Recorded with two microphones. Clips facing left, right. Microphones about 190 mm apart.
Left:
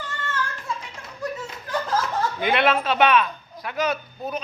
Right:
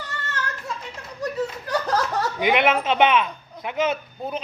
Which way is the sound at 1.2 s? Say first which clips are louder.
Right 5 dB; 35° right (ahead or behind).